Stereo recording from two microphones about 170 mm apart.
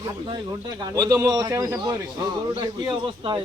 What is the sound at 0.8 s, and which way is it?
A man's voice, 20° right (ahead or behind).